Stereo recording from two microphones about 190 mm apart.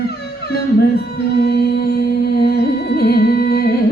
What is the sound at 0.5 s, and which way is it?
Music, 55° left (ahead or behind).